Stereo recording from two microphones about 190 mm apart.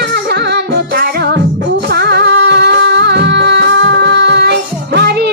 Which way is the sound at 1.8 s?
60° right (ahead or behind).